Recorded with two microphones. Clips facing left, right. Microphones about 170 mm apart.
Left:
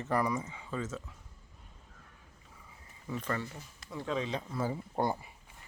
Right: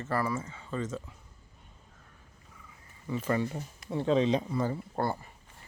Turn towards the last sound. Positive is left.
turn(degrees=10)  # may be behind; listen again after turning